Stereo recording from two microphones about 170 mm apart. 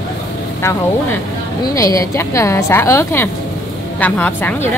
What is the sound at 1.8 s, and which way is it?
A woman's voice, 20° left (ahead or behind).